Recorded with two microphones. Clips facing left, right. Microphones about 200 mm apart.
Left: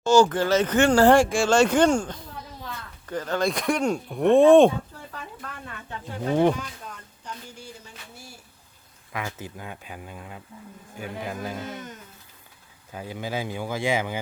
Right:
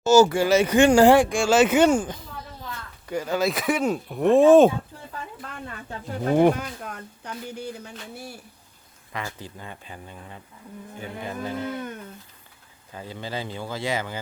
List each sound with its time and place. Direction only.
0.0 s speech: 5° right (ahead or behind)
1.2 s speech: centre (ahead or behind)
5.6 s speech: 35° right (ahead or behind)
6.5 s speech: 60° right (ahead or behind)
9.1 s speech: 10° left (ahead or behind)
11.6 s speech: 60° right (ahead or behind)
12.9 s speech: 10° left (ahead or behind)